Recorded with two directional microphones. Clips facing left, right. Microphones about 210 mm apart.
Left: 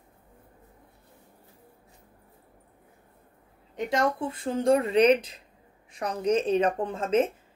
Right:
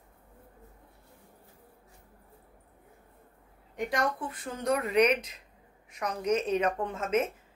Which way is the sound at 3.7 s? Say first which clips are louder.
Left 4 dB; 25° left (ahead or behind).